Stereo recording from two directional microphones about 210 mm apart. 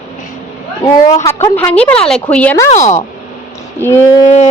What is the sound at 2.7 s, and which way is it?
Speech, 35° left (ahead or behind).